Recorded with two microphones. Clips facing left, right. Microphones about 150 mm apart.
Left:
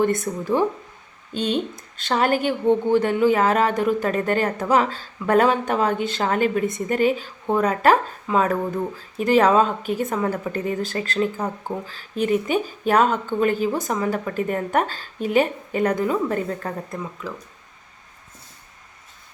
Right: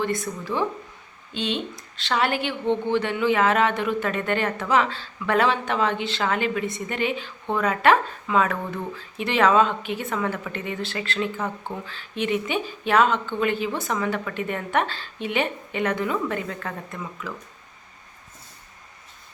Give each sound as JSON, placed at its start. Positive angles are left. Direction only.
{"t": 0.0, "sound": "a woman's voice", "side_deg": 50}